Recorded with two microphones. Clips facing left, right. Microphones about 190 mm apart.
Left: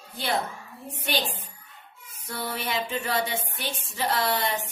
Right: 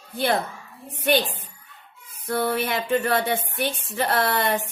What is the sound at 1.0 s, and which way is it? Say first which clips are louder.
Speech: right 8 dB; 55° right (ahead or behind).